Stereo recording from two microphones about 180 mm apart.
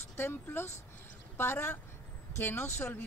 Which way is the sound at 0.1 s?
10° left (ahead or behind).